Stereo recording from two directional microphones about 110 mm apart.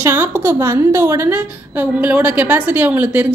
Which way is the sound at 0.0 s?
25° right (ahead or behind).